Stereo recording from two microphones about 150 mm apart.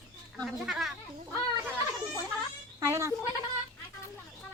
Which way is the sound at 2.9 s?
20° right (ahead or behind).